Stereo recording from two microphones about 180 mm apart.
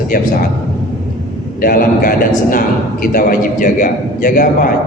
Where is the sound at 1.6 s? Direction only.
50° left (ahead or behind).